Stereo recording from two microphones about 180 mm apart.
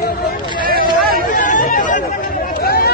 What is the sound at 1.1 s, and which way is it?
Chatter, 50° left (ahead or behind).